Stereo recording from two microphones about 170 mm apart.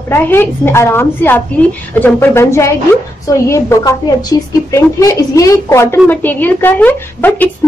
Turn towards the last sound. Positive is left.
turn(degrees=10)  # may be behind; listen again after turning